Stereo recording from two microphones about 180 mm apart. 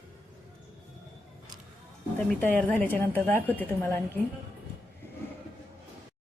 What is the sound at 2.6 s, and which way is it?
A woman's voice, 10° left (ahead or behind).